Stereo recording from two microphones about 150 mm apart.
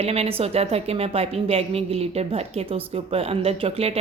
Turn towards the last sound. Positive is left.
turn(degrees=-40)  # may be behind; listen again after turning